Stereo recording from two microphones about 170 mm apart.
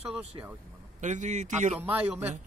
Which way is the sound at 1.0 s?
45° right (ahead or behind).